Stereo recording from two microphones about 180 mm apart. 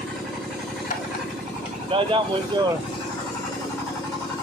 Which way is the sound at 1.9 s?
30° right (ahead or behind).